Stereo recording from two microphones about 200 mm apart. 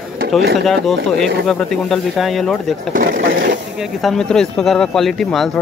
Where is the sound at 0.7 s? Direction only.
Centre (ahead or behind).